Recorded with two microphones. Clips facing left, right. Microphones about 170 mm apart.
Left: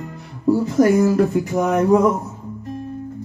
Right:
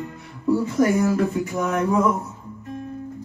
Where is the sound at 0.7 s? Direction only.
35° left (ahead or behind).